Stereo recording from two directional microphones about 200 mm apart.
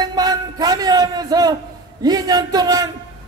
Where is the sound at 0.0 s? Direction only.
20° right (ahead or behind).